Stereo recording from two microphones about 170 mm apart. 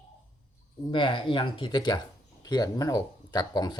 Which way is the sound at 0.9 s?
30° left (ahead or behind).